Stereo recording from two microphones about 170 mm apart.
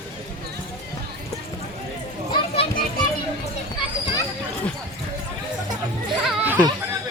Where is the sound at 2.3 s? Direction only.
35° left (ahead or behind).